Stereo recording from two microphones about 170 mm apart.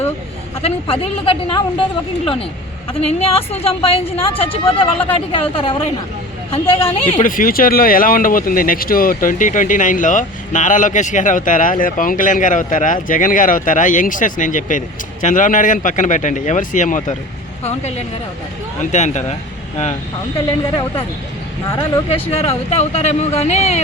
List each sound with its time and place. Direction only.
0.6 s speech: 35° left (ahead or behind)
7.1 s speech: 50° left (ahead or behind)
22.1 s speech: 35° left (ahead or behind)